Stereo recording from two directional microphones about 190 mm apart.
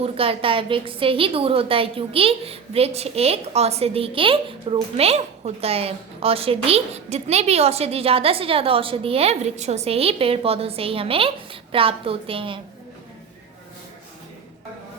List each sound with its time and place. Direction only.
0.0 s a woman's voice: 30° right (ahead or behind)